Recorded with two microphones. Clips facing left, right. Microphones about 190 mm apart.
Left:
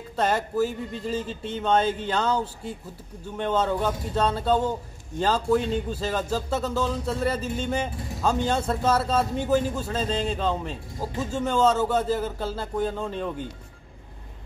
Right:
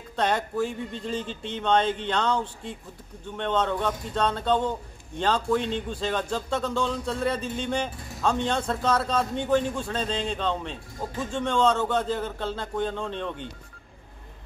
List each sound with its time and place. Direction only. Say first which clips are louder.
0.1 s speech: left 1 dB; 5° left (ahead or behind)